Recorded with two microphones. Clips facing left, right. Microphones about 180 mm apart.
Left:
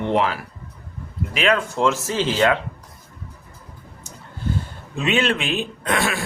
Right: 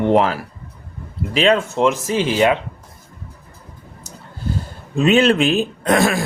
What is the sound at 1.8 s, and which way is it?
Speech, 15° right (ahead or behind).